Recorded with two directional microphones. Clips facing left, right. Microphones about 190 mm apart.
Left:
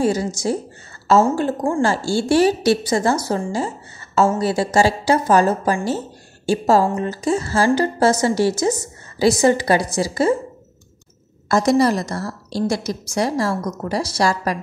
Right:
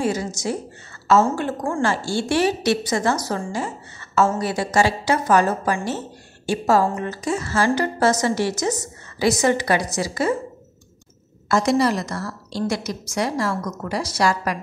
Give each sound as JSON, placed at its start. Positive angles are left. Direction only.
{"t": 0.0, "sound": "a woman's voice", "side_deg": 35}
{"t": 11.4, "sound": "a woman's voice", "side_deg": 40}